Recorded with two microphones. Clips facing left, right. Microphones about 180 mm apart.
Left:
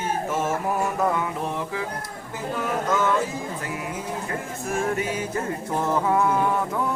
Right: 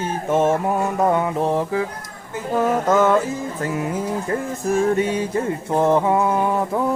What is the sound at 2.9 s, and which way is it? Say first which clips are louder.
Music: right 7 dB; 45° right (ahead or behind).